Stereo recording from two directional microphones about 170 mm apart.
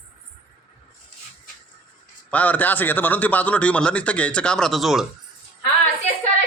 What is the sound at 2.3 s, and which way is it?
A man's voice, 10° left (ahead or behind).